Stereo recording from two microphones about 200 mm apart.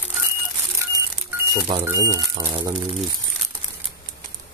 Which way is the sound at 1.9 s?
15° right (ahead or behind).